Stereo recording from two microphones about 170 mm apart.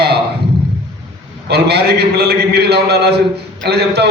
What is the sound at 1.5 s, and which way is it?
A man's voice, 75° right (ahead or behind).